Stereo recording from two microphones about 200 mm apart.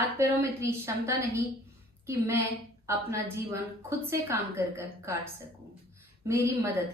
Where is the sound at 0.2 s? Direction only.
15° right (ahead or behind).